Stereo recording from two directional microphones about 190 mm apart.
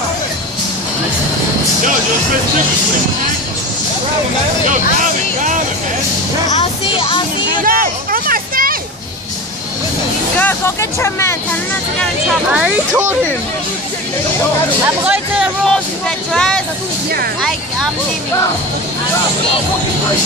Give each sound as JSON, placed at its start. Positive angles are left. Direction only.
{"t": 6.4, "sound": "speech", "side_deg": 35}
{"t": 7.6, "sound": "a sound", "side_deg": -50}
{"t": 10.3, "sound": "speech", "side_deg": 10}
{"t": 12.0, "sound": "speech", "side_deg": -5}
{"t": 15.0, "sound": "speech", "side_deg": 0}